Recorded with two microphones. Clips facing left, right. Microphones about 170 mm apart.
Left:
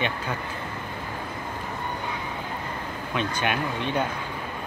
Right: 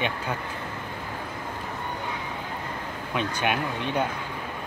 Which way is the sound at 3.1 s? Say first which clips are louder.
Even; 10° right (ahead or behind).